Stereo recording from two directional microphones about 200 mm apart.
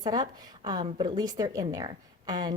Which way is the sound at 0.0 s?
20° right (ahead or behind).